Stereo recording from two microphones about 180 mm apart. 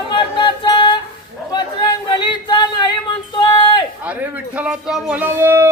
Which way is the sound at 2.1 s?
25° left (ahead or behind).